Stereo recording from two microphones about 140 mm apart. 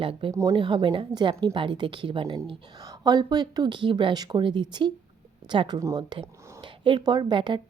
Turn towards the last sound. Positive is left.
turn(degrees=-35)  # may be behind; listen again after turning